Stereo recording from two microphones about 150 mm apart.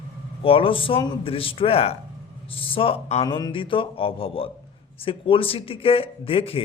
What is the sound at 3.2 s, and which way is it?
A man's voice, 30° left (ahead or behind).